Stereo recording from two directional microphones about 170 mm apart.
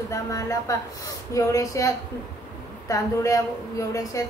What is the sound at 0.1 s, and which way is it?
A woman's voice, 20° left (ahead or behind).